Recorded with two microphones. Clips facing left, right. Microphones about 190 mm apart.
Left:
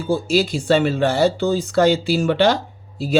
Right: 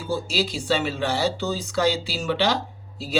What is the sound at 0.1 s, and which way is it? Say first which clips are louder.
Speech: left 7 dB; 50° left (ahead or behind).